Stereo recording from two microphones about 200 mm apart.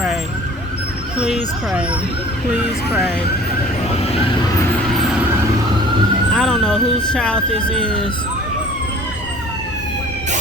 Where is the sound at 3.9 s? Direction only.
30° left (ahead or behind).